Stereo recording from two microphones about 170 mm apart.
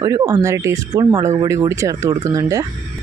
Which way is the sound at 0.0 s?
20° right (ahead or behind).